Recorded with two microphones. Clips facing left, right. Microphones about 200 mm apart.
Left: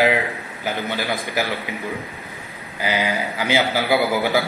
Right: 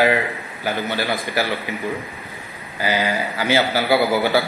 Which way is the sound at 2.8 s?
15° left (ahead or behind).